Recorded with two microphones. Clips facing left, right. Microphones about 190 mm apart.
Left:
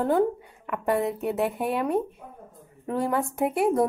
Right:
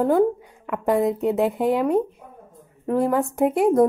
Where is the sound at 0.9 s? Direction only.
65° right (ahead or behind).